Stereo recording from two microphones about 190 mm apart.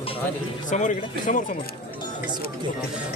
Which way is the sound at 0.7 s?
40° left (ahead or behind).